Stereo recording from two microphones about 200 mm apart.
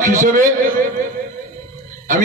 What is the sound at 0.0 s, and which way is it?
Speech, 40° right (ahead or behind).